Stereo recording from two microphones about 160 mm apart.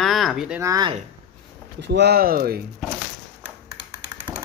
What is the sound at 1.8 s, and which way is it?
Speech, 90° right.